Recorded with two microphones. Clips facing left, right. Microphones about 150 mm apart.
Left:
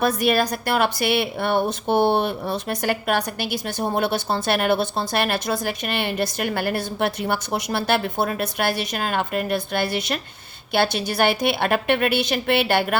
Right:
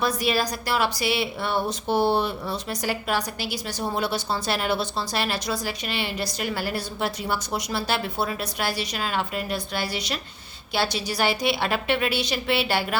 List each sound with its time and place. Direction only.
0.0 s a woman's voice: 55° left (ahead or behind)